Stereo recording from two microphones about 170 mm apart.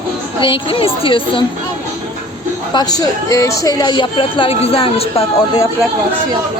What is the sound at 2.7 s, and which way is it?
Speech, 25° left (ahead or behind).